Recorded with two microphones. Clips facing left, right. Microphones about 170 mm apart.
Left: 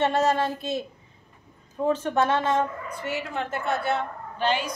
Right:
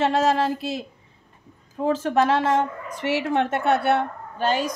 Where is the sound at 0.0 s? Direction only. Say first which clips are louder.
Right 2 dB; 90° right.